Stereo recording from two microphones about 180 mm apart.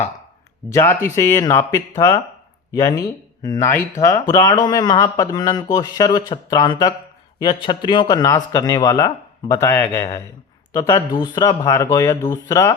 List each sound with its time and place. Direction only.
0.7 s speech: 15° left (ahead or behind)